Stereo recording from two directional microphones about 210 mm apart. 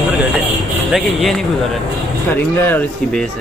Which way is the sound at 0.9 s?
Centre (ahead or behind).